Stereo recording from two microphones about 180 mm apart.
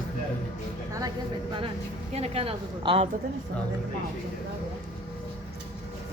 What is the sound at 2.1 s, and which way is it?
Speech, 35° right (ahead or behind).